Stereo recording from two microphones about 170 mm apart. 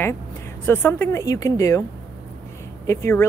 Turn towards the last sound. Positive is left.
turn(degrees=15)  # may be behind; listen again after turning